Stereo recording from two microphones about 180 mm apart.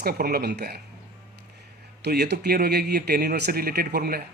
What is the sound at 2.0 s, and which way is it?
Speech, 65° right (ahead or behind).